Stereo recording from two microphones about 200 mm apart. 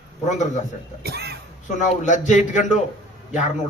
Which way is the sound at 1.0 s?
55° right (ahead or behind).